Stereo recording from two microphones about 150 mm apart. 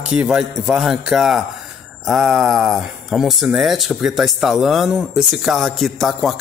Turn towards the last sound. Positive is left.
turn(degrees=0)  # may be behind; listen again after turning